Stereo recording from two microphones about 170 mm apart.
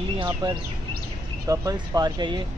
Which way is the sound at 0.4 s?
25° right (ahead or behind).